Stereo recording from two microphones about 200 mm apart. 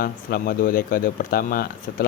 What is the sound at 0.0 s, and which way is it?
Speech, 50° left (ahead or behind).